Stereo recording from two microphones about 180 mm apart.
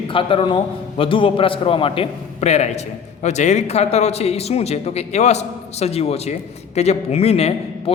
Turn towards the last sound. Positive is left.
turn(degrees=35)  # may be behind; listen again after turning